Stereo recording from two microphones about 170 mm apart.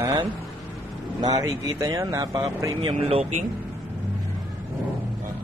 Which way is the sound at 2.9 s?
35° right (ahead or behind).